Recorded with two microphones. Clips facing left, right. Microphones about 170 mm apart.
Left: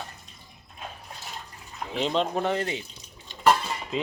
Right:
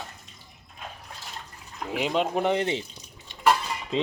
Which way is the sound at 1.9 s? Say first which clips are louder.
Even; 10° right (ahead or behind).